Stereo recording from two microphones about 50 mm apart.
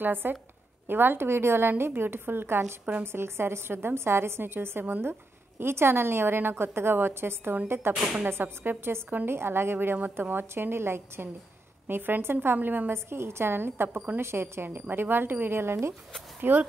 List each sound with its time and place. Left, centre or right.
0.0 s a woman's voice: right
9.9 s a woman's voice: right
12.5 s a woman's voice: right
12.9 s a woman's voice: right
13.8 s a woman's voice: right
14.2 s a woman's voice: right